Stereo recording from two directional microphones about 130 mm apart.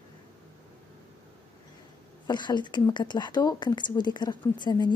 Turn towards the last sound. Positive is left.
turn(degrees=35)  # may be behind; listen again after turning